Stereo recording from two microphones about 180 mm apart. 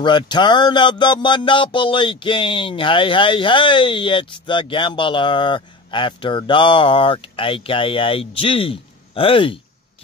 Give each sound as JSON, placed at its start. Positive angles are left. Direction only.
{"t": 0.0, "sound": "music", "side_deg": 25}